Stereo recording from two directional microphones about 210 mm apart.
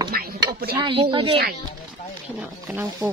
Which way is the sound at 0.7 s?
25° right (ahead or behind).